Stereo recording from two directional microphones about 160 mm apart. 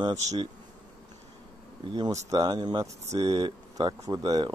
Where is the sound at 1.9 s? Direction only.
25° right (ahead or behind).